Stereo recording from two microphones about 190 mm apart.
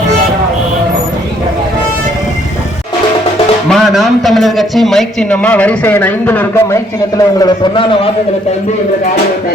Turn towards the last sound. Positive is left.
turn(degrees=25)  # may be behind; listen again after turning